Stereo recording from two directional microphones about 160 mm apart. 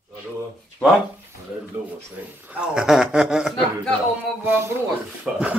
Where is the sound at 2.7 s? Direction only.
5° right (ahead or behind).